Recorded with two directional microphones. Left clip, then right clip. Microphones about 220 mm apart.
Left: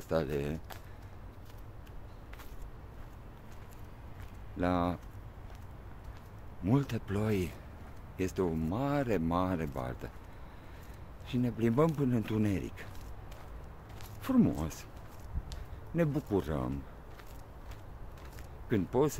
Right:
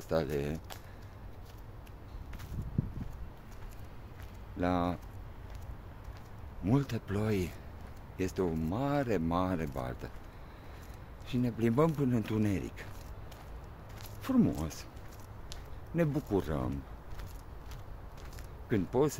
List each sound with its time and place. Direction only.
0.1 s speech: 10° left (ahead or behind)
4.6 s speech: 10° left (ahead or behind)
6.6 s speech: 10° left (ahead or behind)
11.2 s speech: 5° left (ahead or behind)
14.2 s speech: 15° left (ahead or behind)
18.7 s speech: 10° left (ahead or behind)